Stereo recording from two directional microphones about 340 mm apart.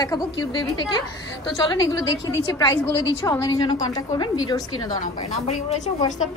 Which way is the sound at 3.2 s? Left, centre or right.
Centre.